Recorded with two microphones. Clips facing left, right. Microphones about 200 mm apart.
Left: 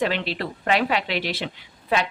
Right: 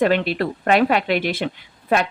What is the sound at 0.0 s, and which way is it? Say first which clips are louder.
Speech: right 7 dB; 50° right (ahead or behind).